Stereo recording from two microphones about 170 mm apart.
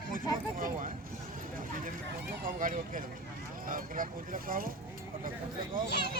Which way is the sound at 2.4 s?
50° right (ahead or behind).